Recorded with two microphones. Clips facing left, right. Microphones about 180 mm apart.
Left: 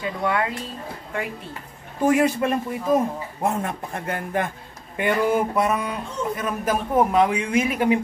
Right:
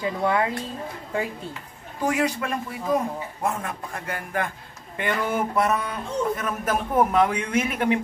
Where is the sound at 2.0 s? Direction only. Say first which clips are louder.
Left 5 dB; 20° left (ahead or behind).